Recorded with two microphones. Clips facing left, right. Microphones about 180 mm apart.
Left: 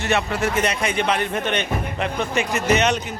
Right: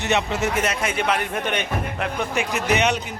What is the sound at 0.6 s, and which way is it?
Speech, 5° right (ahead or behind).